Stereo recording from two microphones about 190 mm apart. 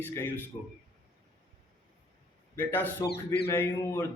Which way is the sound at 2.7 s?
10° left (ahead or behind).